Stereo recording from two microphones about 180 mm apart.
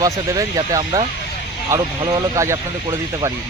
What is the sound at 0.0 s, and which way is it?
Speech, 20° right (ahead or behind).